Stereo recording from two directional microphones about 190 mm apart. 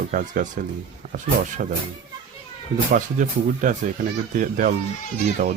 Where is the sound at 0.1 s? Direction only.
45° right (ahead or behind).